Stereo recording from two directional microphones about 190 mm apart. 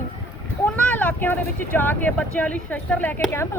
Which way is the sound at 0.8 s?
5° left (ahead or behind).